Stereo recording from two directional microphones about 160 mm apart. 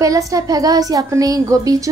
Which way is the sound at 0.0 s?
20° right (ahead or behind).